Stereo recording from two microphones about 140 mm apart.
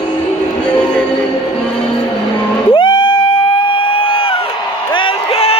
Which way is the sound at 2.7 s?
35° left (ahead or behind).